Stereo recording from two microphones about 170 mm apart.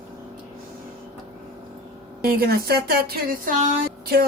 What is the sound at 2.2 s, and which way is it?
A woman's voice, 65° right (ahead or behind).